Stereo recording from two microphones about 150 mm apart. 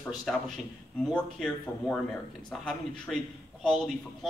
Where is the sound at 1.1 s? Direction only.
10° left (ahead or behind).